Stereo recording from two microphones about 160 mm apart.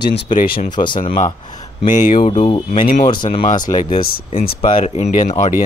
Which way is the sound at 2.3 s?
35° left (ahead or behind).